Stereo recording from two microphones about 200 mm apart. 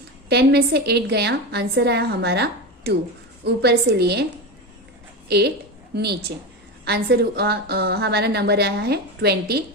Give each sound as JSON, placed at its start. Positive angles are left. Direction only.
{"t": 0.3, "sound": "a woman's voice", "side_deg": -55}
{"t": 5.9, "sound": "a woman's voice", "side_deg": -55}